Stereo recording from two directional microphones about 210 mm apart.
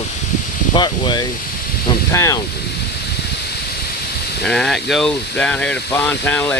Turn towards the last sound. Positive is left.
turn(degrees=10)  # may be behind; listen again after turning